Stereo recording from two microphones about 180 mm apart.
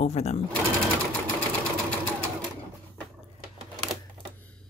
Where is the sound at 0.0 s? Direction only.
40° left (ahead or behind).